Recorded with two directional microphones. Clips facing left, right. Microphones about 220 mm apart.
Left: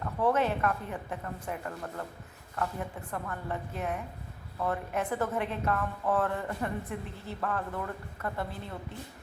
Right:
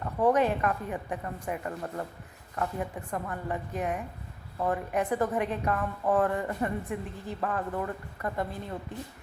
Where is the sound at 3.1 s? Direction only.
15° right (ahead or behind).